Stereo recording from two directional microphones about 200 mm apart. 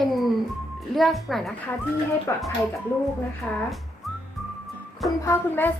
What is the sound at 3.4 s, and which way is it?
Speech, 5° left (ahead or behind).